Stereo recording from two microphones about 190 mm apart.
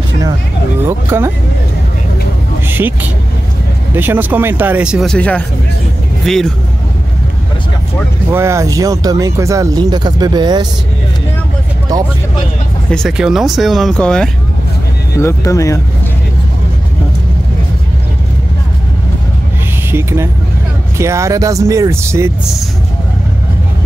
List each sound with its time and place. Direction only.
0.8 s speech: 15° right (ahead or behind)
2.7 s speech: 10° right (ahead or behind)
8.3 s speech: 15° right (ahead or behind)
12.9 s speech: centre (ahead or behind)
15.1 s speech: 15° left (ahead or behind)
19.9 s speech: 15° right (ahead or behind)